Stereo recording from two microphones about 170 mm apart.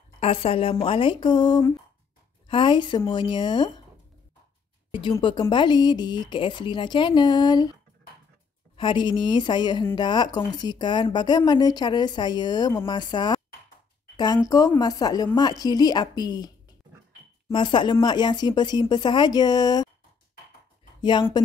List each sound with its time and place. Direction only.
0.2 s a woman's voice: 35° left (ahead or behind)
5.2 s speech: 30° left (ahead or behind)
8.7 s speech: 30° left (ahead or behind)
21.0 s speech: 25° left (ahead or behind)